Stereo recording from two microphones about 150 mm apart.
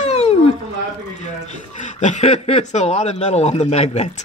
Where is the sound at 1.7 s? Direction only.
55° left (ahead or behind).